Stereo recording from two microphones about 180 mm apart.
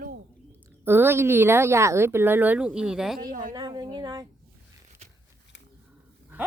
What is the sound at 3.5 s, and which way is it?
Speech, 25° right (ahead or behind).